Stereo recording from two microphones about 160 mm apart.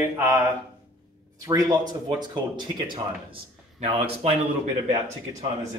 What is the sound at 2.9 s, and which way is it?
Speech, 35° right (ahead or behind).